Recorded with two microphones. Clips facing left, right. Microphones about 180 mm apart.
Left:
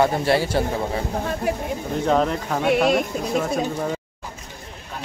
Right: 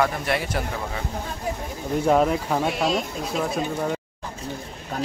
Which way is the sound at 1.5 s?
70° left (ahead or behind).